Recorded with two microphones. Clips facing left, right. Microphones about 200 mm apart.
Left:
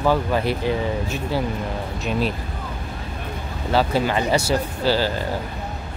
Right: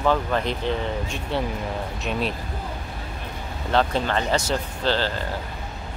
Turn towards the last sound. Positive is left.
turn(degrees=10)  # may be behind; listen again after turning